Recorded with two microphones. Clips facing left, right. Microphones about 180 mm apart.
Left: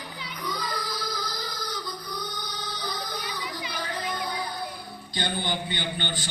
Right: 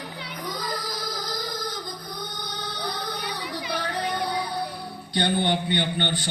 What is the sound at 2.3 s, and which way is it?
Music, 60° right (ahead or behind).